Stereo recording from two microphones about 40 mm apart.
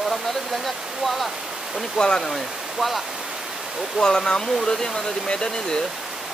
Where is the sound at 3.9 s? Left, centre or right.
Centre.